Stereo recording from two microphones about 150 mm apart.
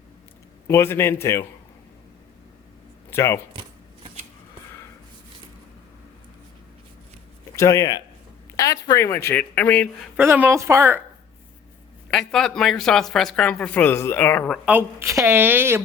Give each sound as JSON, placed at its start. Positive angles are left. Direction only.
{"t": 0.7, "sound": "speech", "side_deg": 15}
{"t": 3.1, "sound": "speech", "side_deg": 15}
{"t": 3.5, "sound": "chopping", "side_deg": -35}
{"t": 7.6, "sound": "speech", "side_deg": 20}
{"t": 10.2, "sound": "speech", "side_deg": -10}
{"t": 12.1, "sound": "speech", "side_deg": 5}
{"t": 14.6, "sound": "speech", "side_deg": -10}